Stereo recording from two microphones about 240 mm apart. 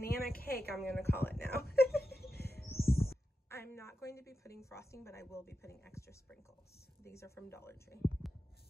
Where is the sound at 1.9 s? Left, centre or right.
Left.